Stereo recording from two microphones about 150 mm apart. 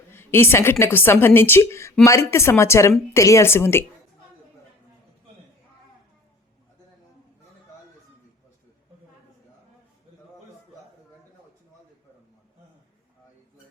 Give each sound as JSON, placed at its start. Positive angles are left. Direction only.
{"t": 0.1, "sound": "a woman's voice", "side_deg": 15}